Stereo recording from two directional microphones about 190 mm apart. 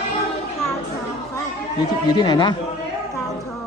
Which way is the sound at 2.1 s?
20° left (ahead or behind).